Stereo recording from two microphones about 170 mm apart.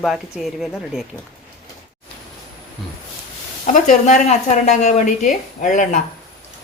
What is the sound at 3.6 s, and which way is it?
Speech, 45° left (ahead or behind).